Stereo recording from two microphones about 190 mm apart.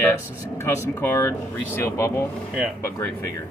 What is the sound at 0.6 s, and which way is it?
Speech, 15° left (ahead or behind).